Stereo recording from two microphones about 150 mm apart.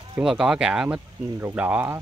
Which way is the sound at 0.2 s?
5° right (ahead or behind).